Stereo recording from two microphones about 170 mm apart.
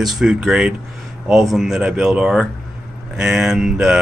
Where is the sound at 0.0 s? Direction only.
5° right (ahead or behind).